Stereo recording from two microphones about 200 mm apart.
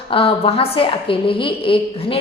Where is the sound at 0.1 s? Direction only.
25° left (ahead or behind).